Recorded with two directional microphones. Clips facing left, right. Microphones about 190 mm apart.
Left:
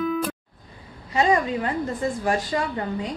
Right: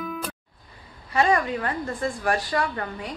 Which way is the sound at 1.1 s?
20° left (ahead or behind).